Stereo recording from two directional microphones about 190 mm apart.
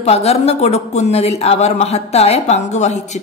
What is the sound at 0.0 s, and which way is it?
A woman's voice, 35° left (ahead or behind).